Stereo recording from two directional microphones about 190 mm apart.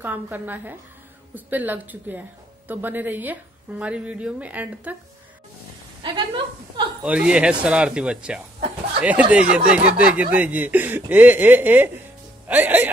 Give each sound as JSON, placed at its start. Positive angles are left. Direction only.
{"t": 0.0, "sound": "a woman's voice", "side_deg": -10}
{"t": 6.0, "sound": "a sound", "side_deg": -25}
{"t": 7.0, "sound": "a woman's voice", "side_deg": -5}